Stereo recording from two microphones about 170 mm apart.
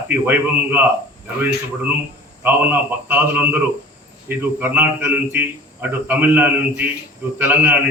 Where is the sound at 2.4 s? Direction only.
10° right (ahead or behind).